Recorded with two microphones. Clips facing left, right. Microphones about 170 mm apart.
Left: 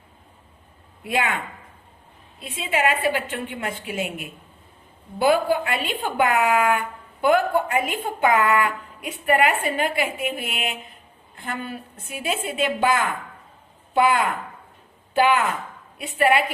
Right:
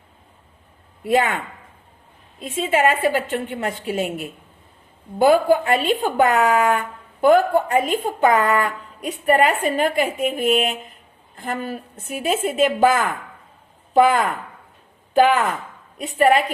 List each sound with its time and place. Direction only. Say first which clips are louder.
1.0 s a woman's voice: right 6 dB; 40° right (ahead or behind)
2.4 s a woman's voice: right 5 dB; 45° right (ahead or behind)
5.2 s a woman's voice: right 4 dB; 45° right (ahead or behind)